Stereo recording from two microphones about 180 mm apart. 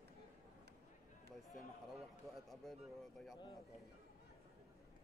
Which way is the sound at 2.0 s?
Centre (ahead or behind).